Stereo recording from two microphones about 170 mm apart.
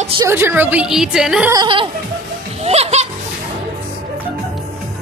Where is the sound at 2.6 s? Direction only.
40° right (ahead or behind).